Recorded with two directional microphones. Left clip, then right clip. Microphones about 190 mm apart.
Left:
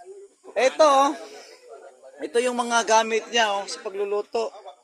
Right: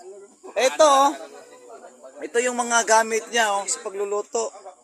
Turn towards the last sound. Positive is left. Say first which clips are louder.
# even
turn(degrees=5)  # may be behind; listen again after turning